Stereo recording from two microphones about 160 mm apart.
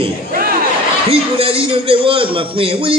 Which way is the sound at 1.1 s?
35° right (ahead or behind).